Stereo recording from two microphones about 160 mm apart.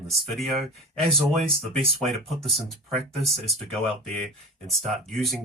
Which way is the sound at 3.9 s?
40° right (ahead or behind).